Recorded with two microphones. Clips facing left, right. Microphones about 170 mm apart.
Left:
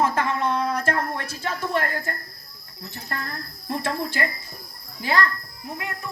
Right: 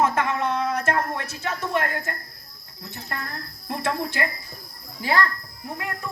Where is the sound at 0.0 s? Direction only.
30° left (ahead or behind).